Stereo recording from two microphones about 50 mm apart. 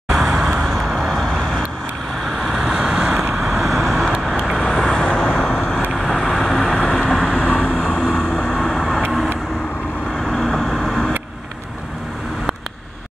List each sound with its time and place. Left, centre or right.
0.1 s vehicle: centre
0.7 s vehicle: centre
10.1 s vehicle: centre